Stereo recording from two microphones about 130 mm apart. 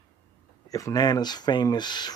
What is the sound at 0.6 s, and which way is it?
Speech, 25° left (ahead or behind).